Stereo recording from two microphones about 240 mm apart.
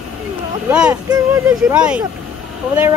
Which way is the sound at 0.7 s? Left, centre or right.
Centre.